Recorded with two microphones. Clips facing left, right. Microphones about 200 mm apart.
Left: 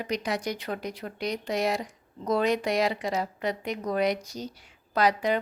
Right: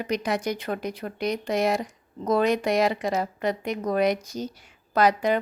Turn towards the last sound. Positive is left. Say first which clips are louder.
# right 3 dB
turn(degrees=-50)  # may be behind; listen again after turning